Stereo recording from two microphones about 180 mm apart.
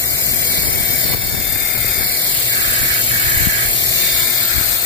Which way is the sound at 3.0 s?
25° left (ahead or behind).